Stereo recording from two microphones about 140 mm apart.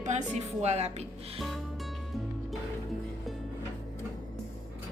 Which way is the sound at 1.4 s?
Centre (ahead or behind).